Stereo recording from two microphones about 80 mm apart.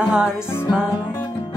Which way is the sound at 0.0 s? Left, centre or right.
Centre.